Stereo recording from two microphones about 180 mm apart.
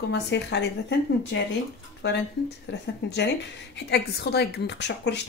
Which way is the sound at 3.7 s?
65° left (ahead or behind).